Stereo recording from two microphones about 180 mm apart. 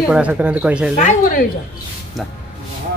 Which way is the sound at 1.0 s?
45° left (ahead or behind).